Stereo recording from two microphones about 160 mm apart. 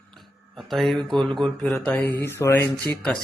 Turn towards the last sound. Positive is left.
turn(degrees=5)  # may be behind; listen again after turning